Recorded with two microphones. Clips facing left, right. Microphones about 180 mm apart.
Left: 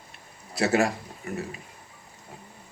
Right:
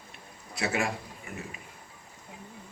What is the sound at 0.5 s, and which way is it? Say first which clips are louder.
Speech: left 7 dB; 40° left (ahead or behind).